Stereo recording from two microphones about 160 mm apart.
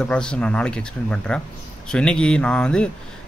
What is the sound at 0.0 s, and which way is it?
Speech, 5° left (ahead or behind).